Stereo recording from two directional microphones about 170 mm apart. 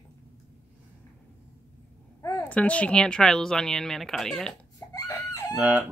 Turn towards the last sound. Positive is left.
turn(degrees=-10)  # may be behind; listen again after turning